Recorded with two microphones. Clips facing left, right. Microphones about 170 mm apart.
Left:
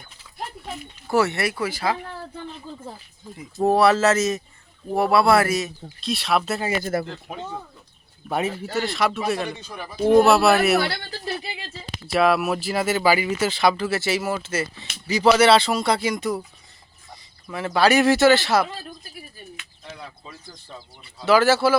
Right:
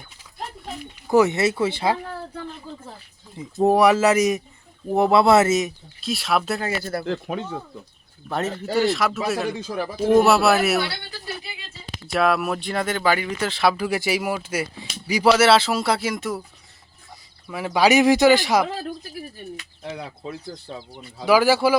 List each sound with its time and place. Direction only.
1.0 s speech: 20° right (ahead or behind)
3.3 s speech: 15° right (ahead or behind)
6.0 s speech: centre (ahead or behind); by 7.0 s 15° left (ahead or behind)
8.3 s speech: 10° left (ahead or behind)
8.8 s speech: centre (ahead or behind)
9.6 s speech: 90° right
10.1 s speech: centre (ahead or behind)
12.0 s speech: centre (ahead or behind)
17.5 s speech: 10° right (ahead or behind)
19.8 s speech: 70° right (ahead or behind)
21.2 s speech: 10° right (ahead or behind)